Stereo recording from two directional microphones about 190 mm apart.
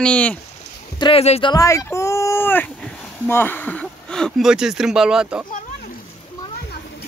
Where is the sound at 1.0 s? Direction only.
30° left (ahead or behind); by 5.4 s 5° right (ahead or behind).